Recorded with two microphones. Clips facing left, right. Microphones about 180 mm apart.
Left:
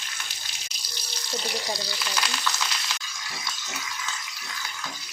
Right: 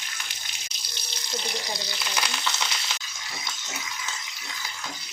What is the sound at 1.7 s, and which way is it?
Frying, 20° right (ahead or behind).